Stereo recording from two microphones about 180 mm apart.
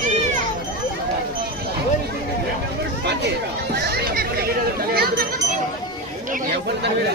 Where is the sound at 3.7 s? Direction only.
60° right (ahead or behind).